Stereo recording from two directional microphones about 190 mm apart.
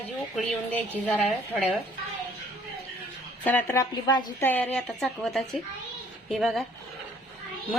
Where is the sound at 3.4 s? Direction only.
10° left (ahead or behind).